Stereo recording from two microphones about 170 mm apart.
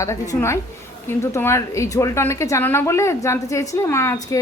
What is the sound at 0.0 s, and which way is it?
A woman's voice, 15° left (ahead or behind).